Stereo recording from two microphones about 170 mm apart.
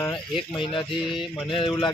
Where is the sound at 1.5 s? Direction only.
30° left (ahead or behind).